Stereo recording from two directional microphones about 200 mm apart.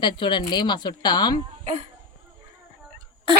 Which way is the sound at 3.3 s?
25° right (ahead or behind).